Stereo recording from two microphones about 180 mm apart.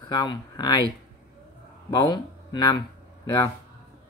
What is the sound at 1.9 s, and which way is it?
Speech, 20° left (ahead or behind).